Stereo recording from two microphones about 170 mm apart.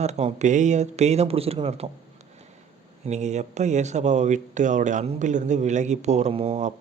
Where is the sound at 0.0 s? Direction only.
40° right (ahead or behind).